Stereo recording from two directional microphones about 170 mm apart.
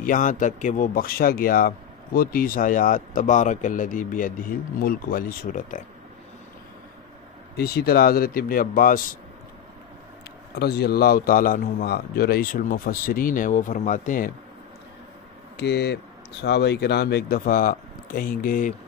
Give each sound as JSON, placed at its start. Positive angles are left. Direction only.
{"t": 0.0, "sound": "speech", "side_deg": 50}
{"t": 7.5, "sound": "a man's voice", "side_deg": 65}
{"t": 10.5, "sound": "a man's voice", "side_deg": 70}
{"t": 15.5, "sound": "a man's voice", "side_deg": 80}